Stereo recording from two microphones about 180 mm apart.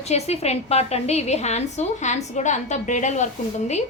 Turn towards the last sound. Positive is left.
turn(degrees=40)  # may be behind; listen again after turning